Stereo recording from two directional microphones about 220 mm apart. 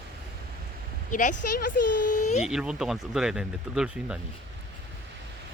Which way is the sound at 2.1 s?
35° left (ahead or behind).